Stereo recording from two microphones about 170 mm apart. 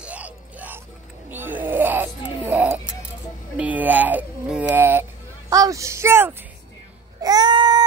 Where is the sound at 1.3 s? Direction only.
10° right (ahead or behind).